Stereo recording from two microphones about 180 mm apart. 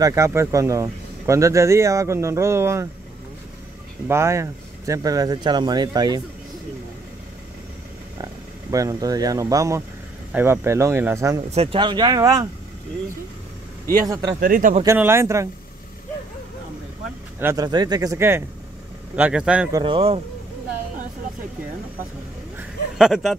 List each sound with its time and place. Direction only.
0.0 s speech: 15° right (ahead or behind)
4.1 s speech: 15° right (ahead or behind)
8.2 s speech: 20° right (ahead or behind)
11.5 s speech: 30° right (ahead or behind)
14.0 s speech: 20° right (ahead or behind)
14.4 s speech: 50° right (ahead or behind)
15.0 s speech: 15° right (ahead or behind)
17.4 s speech: 15° right (ahead or behind)
19.7 s speech: 30° right (ahead or behind)
22.6 s a sound: centre (ahead or behind)